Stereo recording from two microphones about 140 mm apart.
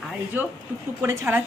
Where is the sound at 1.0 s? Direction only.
20° right (ahead or behind).